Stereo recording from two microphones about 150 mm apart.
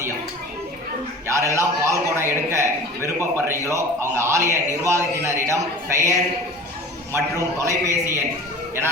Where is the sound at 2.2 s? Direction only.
20° right (ahead or behind).